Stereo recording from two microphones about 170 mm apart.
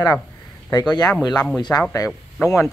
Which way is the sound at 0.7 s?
25° left (ahead or behind).